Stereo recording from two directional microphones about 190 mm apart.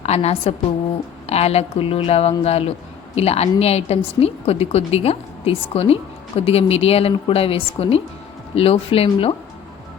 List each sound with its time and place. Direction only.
0.0 s a woman's voice: 35° left (ahead or behind)